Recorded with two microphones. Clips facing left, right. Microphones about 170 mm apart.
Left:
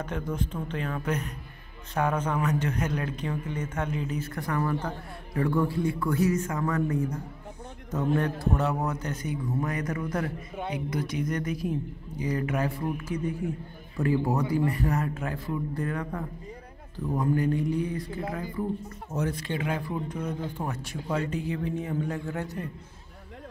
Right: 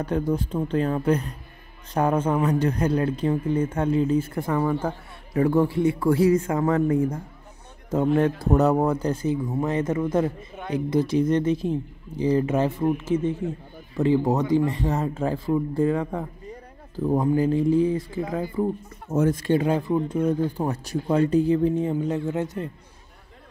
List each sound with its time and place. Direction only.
0.0 s speech: 35° right (ahead or behind)
8.5 s speech: 40° right (ahead or behind); by 16.3 s 20° right (ahead or behind)
16.9 s speech: 35° right (ahead or behind)
19.1 s speech: 45° right (ahead or behind)
19.7 s speech: 30° right (ahead or behind)